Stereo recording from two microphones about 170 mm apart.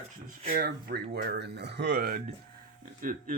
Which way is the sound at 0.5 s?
65° right (ahead or behind).